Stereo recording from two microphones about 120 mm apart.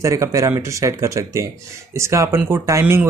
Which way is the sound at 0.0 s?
25° right (ahead or behind).